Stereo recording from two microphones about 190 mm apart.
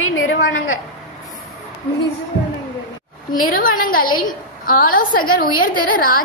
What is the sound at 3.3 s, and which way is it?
A woman's voice, 50° left (ahead or behind).